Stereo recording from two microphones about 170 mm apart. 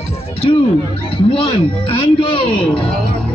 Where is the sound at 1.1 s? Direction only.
35° left (ahead or behind).